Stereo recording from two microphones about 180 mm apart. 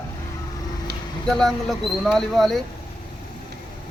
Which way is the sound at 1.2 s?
Centre (ahead or behind).